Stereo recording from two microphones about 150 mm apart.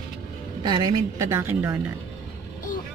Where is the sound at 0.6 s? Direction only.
25° right (ahead or behind).